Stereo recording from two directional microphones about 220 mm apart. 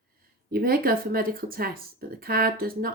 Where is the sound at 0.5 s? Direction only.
40° right (ahead or behind).